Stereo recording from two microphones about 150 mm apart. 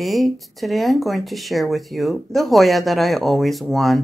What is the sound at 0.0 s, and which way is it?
Speech, centre (ahead or behind).